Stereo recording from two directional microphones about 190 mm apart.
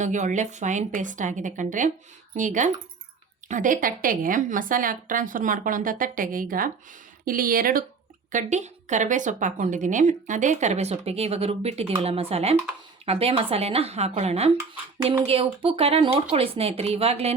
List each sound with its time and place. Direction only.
0.0 s a woman's voice: 40° right (ahead or behind)